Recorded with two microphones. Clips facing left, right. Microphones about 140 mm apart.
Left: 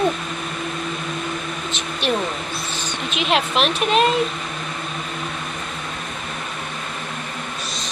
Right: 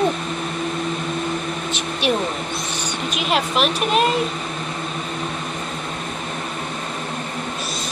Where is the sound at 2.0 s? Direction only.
10° right (ahead or behind).